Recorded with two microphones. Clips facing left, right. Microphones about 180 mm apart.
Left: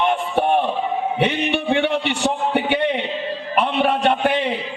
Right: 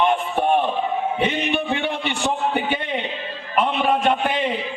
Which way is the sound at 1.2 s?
70° left (ahead or behind).